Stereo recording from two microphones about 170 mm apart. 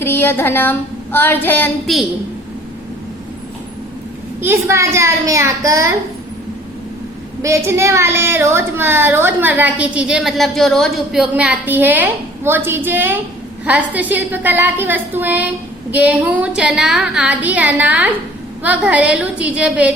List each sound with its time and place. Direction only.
0.0 s a sound: 15° left (ahead or behind)
4.4 s speech: 15° right (ahead or behind)
7.4 s speech: 15° right (ahead or behind)